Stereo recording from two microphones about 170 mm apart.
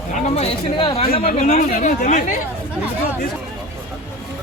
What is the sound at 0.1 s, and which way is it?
Speech, 35° left (ahead or behind).